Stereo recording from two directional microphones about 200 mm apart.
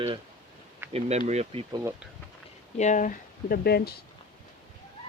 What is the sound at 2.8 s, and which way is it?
Speech, 40° left (ahead or behind).